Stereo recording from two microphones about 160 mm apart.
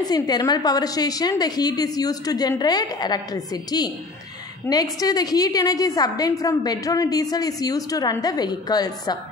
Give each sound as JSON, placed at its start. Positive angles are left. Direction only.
{"t": 0.0, "sound": "a woman's voice", "side_deg": 25}
{"t": 4.7, "sound": "a woman's voice", "side_deg": 15}